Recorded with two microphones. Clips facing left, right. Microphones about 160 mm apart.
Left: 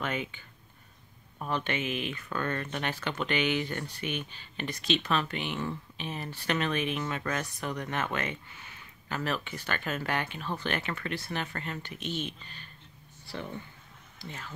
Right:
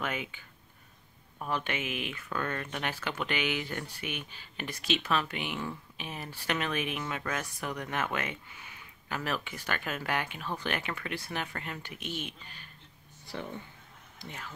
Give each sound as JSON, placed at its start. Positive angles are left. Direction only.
{"t": 0.0, "sound": "speech", "side_deg": -10}
{"t": 1.4, "sound": "speech", "side_deg": -5}
{"t": 14.1, "sound": "speech", "side_deg": -15}